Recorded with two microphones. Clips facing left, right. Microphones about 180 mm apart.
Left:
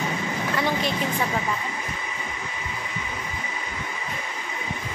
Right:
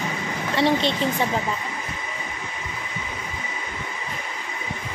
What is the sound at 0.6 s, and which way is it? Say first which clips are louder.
Speech: right 6 dB; 30° right (ahead or behind).